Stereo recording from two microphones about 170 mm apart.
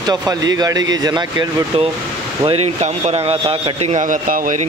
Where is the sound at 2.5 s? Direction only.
40° right (ahead or behind).